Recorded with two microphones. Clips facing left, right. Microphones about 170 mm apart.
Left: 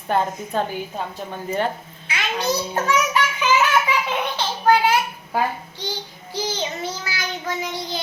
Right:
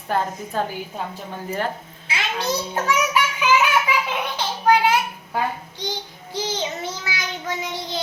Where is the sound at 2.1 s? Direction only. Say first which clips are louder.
Even; 30° right (ahead or behind).